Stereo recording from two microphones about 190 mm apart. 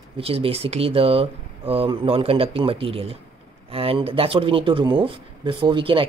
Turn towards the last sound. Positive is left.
turn(degrees=-25)  # may be behind; listen again after turning